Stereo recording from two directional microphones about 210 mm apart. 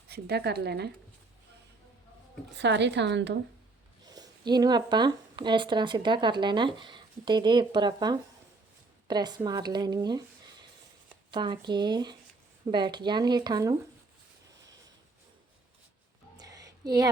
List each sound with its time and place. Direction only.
0.1 s speech: 50° right (ahead or behind)
2.6 s a woman's voice: 55° right (ahead or behind)
4.0 s speech: 20° right (ahead or behind)
16.4 s a sound: 15° right (ahead or behind)